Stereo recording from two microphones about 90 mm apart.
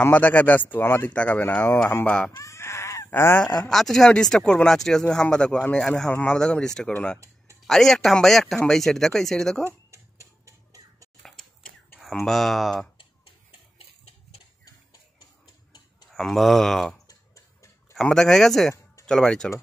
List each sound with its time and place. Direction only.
0.0 s speech: 20° left (ahead or behind)
2.3 s goat: 30° left (ahead or behind)
3.6 s speech: 5° left (ahead or behind)
9.7 s tick-tock: 35° right (ahead or behind)
12.3 s speech: 5° left (ahead or behind)
16.1 s speech: 5° left (ahead or behind)
18.0 s speech: 5° left (ahead or behind)